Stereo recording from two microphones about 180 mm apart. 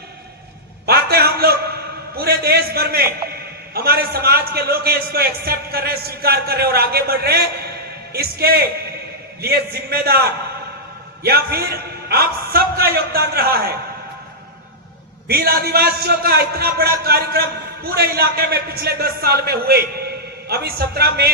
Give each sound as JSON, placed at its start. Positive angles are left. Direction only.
{"t": 0.9, "sound": "a sound", "side_deg": -60}
{"t": 2.1, "sound": "a man's voice", "side_deg": -60}
{"t": 15.3, "sound": "a man's voice", "side_deg": -60}